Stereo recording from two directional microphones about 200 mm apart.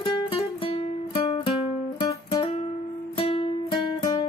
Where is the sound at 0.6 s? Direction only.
25° left (ahead or behind).